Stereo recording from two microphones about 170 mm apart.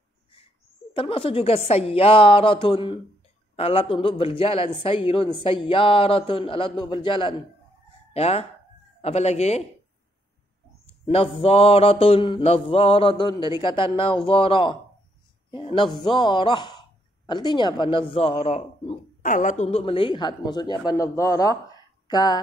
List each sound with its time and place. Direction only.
0.9 s mantra: 30° left (ahead or behind)
8.1 s speech: 40° left (ahead or behind)
9.0 s mantra: 40° left (ahead or behind)
11.1 s mantra: 35° left (ahead or behind)
15.5 s speech: 30° left (ahead or behind)